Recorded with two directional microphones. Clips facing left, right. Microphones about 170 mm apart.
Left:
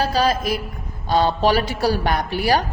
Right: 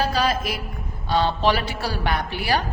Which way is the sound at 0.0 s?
40° left (ahead or behind).